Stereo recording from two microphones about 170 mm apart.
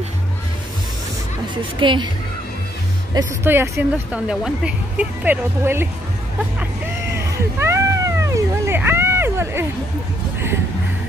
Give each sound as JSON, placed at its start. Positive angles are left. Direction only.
{"t": 1.8, "sound": "speech", "side_deg": -30}
{"t": 3.4, "sound": "speech", "side_deg": -15}
{"t": 7.3, "sound": "cat", "side_deg": -15}